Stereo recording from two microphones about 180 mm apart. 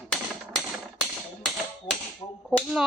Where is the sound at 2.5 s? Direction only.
Centre (ahead or behind).